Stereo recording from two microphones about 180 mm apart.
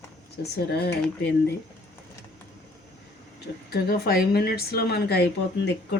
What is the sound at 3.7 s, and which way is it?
A woman's voice, 60° left (ahead or behind).